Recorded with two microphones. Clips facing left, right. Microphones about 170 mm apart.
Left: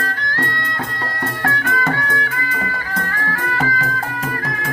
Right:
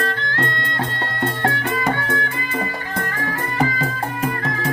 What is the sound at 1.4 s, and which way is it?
Music, 25° right (ahead or behind).